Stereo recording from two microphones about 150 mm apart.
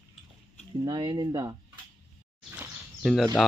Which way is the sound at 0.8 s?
30° right (ahead or behind).